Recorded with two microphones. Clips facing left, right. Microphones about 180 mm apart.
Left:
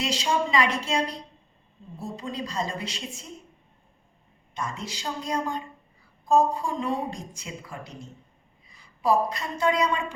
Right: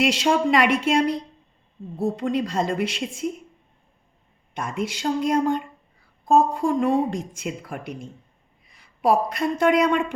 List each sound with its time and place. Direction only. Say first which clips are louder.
0.0 s a woman's voice: right 6 dB; 60° right (ahead or behind)
4.5 s a woman's voice: right 6 dB; 60° right (ahead or behind)